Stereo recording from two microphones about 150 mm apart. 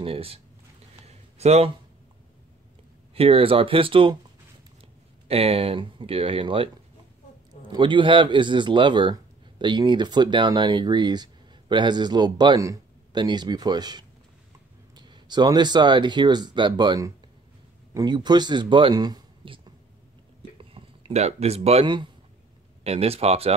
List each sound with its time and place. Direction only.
0.0 s speech: 40° right (ahead or behind)
1.0 s a sound: 45° right (ahead or behind)
3.2 s speech: 40° right (ahead or behind)
5.3 s a man's voice: 40° right (ahead or behind)
22.8 s speech: 40° right (ahead or behind)